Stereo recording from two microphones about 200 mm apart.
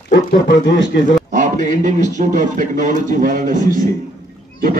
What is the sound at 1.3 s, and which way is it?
A man's voice, 40° right (ahead or behind).